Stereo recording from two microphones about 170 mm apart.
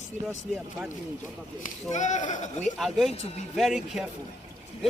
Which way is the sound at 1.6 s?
45° left (ahead or behind).